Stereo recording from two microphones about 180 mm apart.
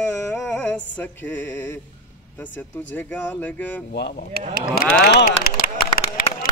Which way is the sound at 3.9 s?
60° left (ahead or behind).